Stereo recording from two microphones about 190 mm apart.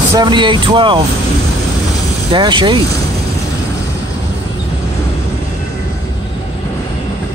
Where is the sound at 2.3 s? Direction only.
25° right (ahead or behind).